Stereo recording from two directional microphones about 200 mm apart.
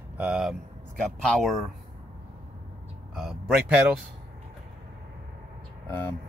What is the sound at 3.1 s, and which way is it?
Speech, 5° right (ahead or behind).